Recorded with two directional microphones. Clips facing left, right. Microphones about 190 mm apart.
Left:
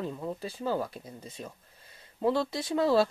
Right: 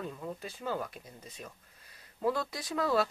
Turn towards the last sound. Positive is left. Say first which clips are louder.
# left 5 dB
turn(degrees=30)  # may be behind; listen again after turning